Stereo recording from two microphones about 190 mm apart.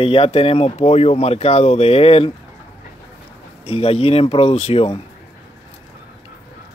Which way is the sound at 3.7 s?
30° left (ahead or behind).